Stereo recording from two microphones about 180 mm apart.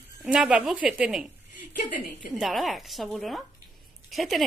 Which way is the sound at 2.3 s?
Centre (ahead or behind).